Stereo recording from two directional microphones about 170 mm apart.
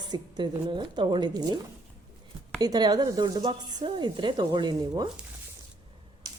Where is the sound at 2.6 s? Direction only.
25° right (ahead or behind).